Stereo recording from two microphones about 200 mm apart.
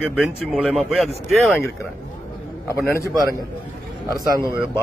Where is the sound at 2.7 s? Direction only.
15° left (ahead or behind).